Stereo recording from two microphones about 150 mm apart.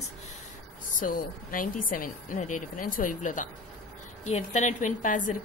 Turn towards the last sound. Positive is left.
turn(degrees=60)  # may be behind; listen again after turning